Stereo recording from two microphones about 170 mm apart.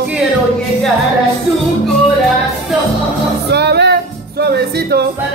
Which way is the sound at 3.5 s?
75° right (ahead or behind).